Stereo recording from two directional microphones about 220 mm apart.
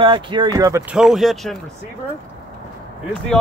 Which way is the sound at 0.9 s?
Centre (ahead or behind).